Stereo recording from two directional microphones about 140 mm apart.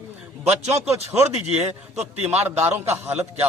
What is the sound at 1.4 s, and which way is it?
Speech, 50° right (ahead or behind).